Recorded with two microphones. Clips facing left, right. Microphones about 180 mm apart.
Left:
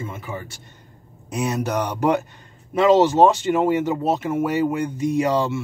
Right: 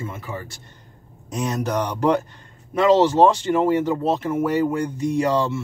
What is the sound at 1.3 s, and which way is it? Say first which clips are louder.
Speech: even; 10° left (ahead or behind).